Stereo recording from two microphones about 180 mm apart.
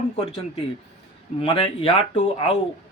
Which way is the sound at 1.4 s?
30° left (ahead or behind).